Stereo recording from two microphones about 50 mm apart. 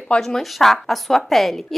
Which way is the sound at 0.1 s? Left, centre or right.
Centre.